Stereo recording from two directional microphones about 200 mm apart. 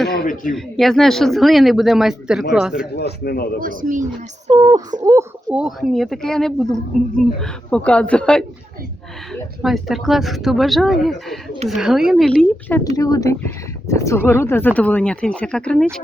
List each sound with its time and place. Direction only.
0.5 s speech: centre (ahead or behind)
2.9 s speech: 55° left (ahead or behind)
3.6 s speech: 45° right (ahead or behind)
4.5 s speech: 15° right (ahead or behind)
5.5 s speech: centre (ahead or behind)